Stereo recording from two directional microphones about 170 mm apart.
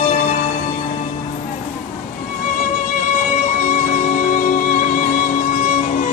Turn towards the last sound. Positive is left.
turn(degrees=50)  # may be behind; listen again after turning